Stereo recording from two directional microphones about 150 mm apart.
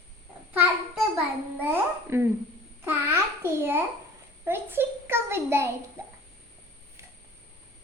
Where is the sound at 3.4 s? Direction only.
15° right (ahead or behind).